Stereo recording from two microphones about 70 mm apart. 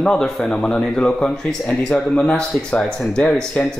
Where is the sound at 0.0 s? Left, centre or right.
Centre.